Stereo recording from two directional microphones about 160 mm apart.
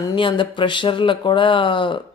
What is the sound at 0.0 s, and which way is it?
Speech, 30° left (ahead or behind).